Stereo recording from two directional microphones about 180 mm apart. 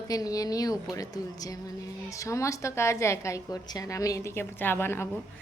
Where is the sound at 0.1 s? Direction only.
20° left (ahead or behind).